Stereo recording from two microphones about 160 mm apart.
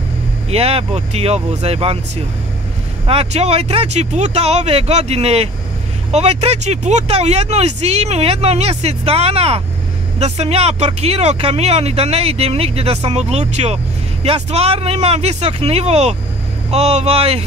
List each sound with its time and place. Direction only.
0.5 s speech: 40° right (ahead or behind)
3.1 s speech: 40° right (ahead or behind)